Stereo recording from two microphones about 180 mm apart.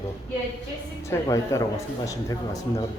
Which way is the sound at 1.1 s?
20° left (ahead or behind).